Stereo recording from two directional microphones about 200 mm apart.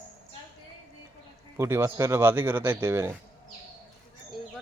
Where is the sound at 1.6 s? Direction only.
15° right (ahead or behind).